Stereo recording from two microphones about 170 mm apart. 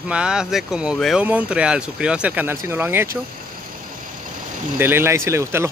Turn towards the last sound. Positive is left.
turn(degrees=-15)  # may be behind; listen again after turning